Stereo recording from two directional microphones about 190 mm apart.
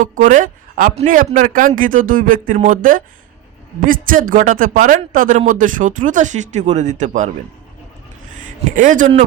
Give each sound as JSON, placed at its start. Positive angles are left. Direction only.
{"t": 0.0, "sound": "speech", "side_deg": -45}
{"t": 8.7, "sound": "speech", "side_deg": -45}